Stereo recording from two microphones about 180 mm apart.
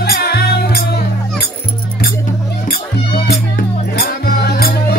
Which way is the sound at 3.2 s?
65° left (ahead or behind).